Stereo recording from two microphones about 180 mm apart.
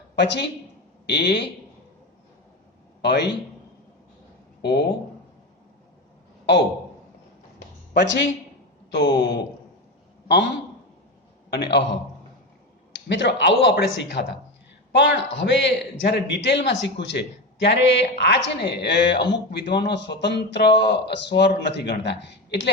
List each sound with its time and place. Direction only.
0.2 s a man's voice: 70° left (ahead or behind)
3.0 s a man's voice: 70° left (ahead or behind)
4.6 s a man's voice: 65° left (ahead or behind)
7.9 s speech: 90° left
8.9 s a man's voice: 70° left (ahead or behind)
11.5 s a man's voice: 70° left (ahead or behind)
13.1 s a man's voice: 75° left (ahead or behind)
14.9 s a man's voice: 85° left; by 22.7 s 70° left (ahead or behind)